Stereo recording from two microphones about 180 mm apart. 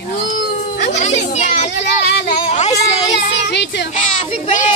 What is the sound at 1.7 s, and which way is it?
Children playing, 70° left (ahead or behind).